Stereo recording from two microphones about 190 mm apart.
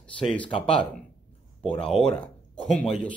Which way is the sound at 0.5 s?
30° left (ahead or behind).